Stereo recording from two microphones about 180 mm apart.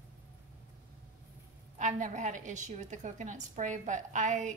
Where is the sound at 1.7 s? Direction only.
40° right (ahead or behind).